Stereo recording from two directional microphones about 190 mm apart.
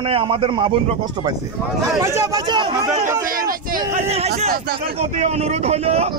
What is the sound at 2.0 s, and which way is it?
Speech, 15° right (ahead or behind).